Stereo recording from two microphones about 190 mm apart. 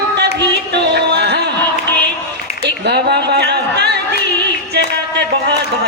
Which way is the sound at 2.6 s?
60° right (ahead or behind).